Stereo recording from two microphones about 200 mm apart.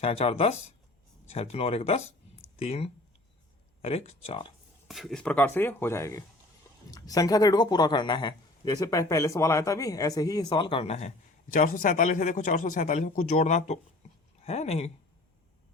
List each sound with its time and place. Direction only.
0.0 s speech: 30° left (ahead or behind)
4.9 s speech: centre (ahead or behind); by 11.1 s 30° left (ahead or behind)
11.5 s speech: 45° left (ahead or behind)
14.0 s a sound: 35° left (ahead or behind)
14.4 s speech: 30° left (ahead or behind)